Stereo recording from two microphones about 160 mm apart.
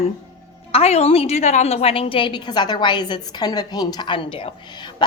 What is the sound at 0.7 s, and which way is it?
A woman's voice, 40° left (ahead or behind).